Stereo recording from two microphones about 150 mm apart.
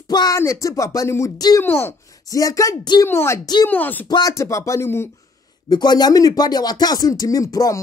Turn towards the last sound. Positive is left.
turn(degrees=20)  # may be behind; listen again after turning